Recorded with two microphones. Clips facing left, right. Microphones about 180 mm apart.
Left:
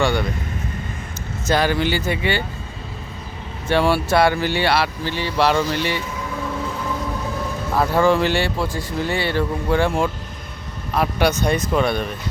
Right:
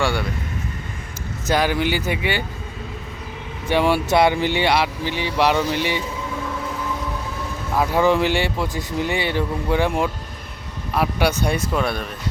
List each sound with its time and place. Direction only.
0.0 s speech: 10° right (ahead or behind)
1.5 s speech: 10° right (ahead or behind)
3.7 s speech: 15° right (ahead or behind)
7.8 s speech: 15° right (ahead or behind)